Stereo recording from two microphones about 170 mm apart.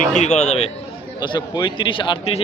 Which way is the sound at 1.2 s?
25° left (ahead or behind).